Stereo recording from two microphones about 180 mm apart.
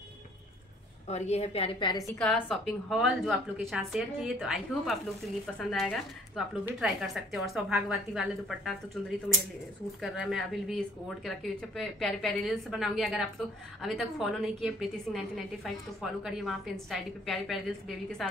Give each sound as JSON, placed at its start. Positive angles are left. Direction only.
{"t": 1.0, "sound": "a woman's voice", "side_deg": 40}
{"t": 2.5, "sound": "a woman's voice", "side_deg": 0}
{"t": 10.0, "sound": "a woman's voice", "side_deg": 0}